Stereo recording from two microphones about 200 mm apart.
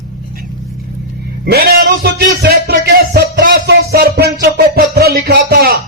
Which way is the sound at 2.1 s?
50° right (ahead or behind).